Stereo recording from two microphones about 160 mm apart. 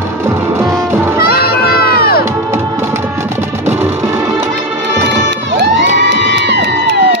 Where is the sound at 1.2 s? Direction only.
75° left (ahead or behind).